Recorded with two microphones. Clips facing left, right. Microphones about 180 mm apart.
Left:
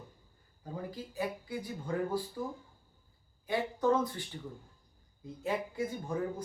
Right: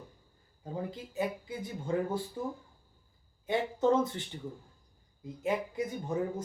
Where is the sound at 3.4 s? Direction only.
25° right (ahead or behind).